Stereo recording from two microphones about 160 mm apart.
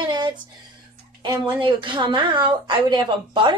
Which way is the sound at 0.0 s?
25° right (ahead or behind).